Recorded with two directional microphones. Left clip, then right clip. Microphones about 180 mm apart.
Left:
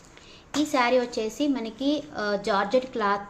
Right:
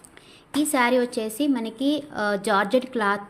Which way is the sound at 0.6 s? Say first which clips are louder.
Right 2 dB; 30° right (ahead or behind).